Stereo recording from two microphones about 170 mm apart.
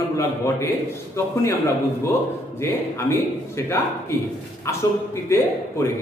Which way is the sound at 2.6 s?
15° left (ahead or behind).